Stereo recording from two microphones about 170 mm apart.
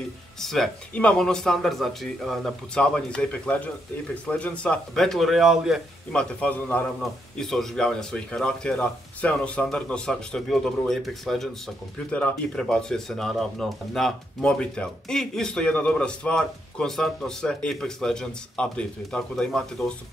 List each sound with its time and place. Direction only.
0.4 s a man's voice: centre (ahead or behind)